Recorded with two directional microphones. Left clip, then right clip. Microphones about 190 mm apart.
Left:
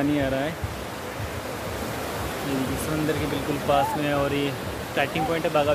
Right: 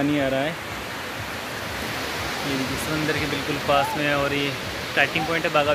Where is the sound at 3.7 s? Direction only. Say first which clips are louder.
Right 2 dB; centre (ahead or behind).